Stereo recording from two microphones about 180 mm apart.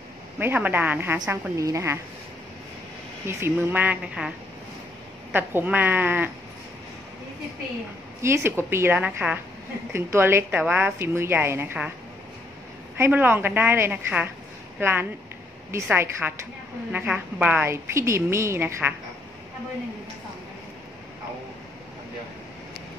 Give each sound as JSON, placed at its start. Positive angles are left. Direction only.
{"t": 0.4, "sound": "a woman's voice", "side_deg": -10}
{"t": 3.3, "sound": "a woman's voice", "side_deg": -15}
{"t": 5.3, "sound": "a woman's voice", "side_deg": -10}
{"t": 8.2, "sound": "a woman's voice", "side_deg": -15}
{"t": 12.9, "sound": "a woman's voice", "side_deg": -10}